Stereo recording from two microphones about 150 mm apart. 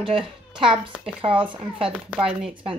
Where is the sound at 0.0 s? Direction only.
35° right (ahead or behind).